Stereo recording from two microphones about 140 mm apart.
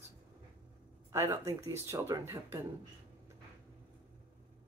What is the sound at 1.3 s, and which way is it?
Speech, 20° right (ahead or behind).